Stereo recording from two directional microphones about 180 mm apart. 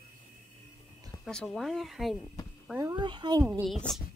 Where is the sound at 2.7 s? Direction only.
20° right (ahead or behind).